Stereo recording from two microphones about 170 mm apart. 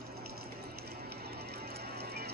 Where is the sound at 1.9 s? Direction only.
70° right (ahead or behind).